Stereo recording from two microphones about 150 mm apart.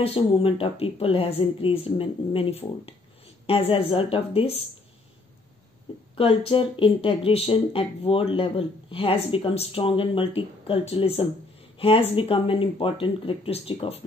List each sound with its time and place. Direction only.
0.0 s speech: 40° left (ahead or behind)
6.1 s speech: 35° left (ahead or behind)